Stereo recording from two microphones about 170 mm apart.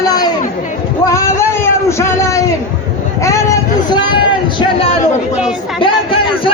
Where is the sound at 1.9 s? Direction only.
15° left (ahead or behind).